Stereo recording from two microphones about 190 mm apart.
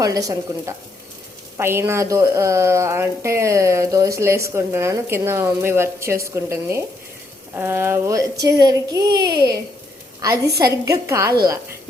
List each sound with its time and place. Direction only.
0.0 s speech: 20° right (ahead or behind)
10.4 s a woman's voice: 60° right (ahead or behind)
10.7 s speech: 15° right (ahead or behind)